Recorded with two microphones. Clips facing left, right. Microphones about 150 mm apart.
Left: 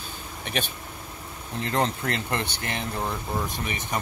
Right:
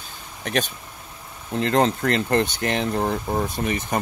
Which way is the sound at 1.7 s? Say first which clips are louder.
Right 6 dB; 40° right (ahead or behind).